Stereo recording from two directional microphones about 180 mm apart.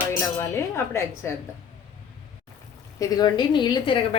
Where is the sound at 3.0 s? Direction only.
25° left (ahead or behind).